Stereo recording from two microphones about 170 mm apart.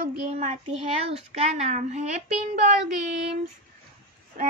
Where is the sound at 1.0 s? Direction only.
35° right (ahead or behind).